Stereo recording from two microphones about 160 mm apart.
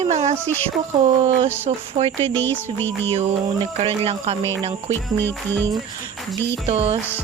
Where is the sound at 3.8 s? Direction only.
35° right (ahead or behind).